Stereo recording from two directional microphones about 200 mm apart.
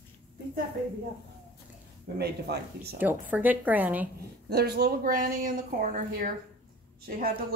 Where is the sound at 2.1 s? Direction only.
55° right (ahead or behind).